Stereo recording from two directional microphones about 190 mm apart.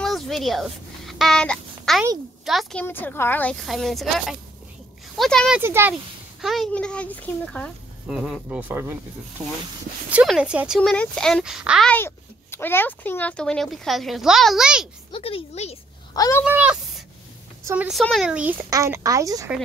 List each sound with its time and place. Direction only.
0.0 s a sound: centre (ahead or behind)
2.4 s speech: centre (ahead or behind)
5.6 s speech: 10° right (ahead or behind)
6.4 s speech: centre (ahead or behind)
10.1 s speech: 5° right (ahead or behind)
11.9 s speech: 10° left (ahead or behind); by 14.9 s 5° right (ahead or behind)
15.0 s a woman's voice: 30° left (ahead or behind)
16.1 s speech: 15° left (ahead or behind)
16.4 s speech: 5° right (ahead or behind)